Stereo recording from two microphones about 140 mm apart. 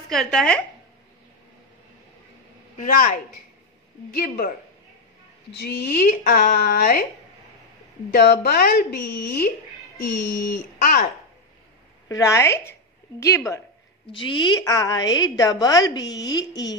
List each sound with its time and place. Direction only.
0.1 s speech: 5° left (ahead or behind)
2.8 s speech: 70° left (ahead or behind)
4.1 s speech: 90° left
5.9 s speech: 90° left
8.1 s speech: 90° left
12.1 s a woman's voice: 20° left (ahead or behind)
14.1 s a woman's voice: 35° left (ahead or behind)